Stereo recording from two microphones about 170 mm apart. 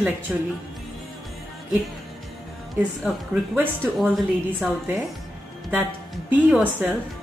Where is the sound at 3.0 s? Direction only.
5° right (ahead or behind).